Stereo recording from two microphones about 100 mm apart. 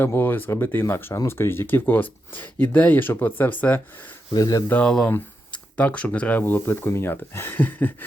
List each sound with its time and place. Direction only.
0.0 s speech: 20° left (ahead or behind)
4.4 s speech: 40° left (ahead or behind)
4.7 s speech: 10° left (ahead or behind)